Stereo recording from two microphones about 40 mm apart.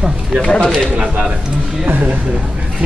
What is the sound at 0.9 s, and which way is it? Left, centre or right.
Speech, right.